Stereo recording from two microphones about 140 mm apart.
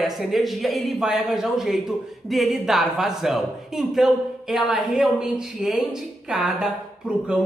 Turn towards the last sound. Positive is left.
turn(degrees=-5)  # may be behind; listen again after turning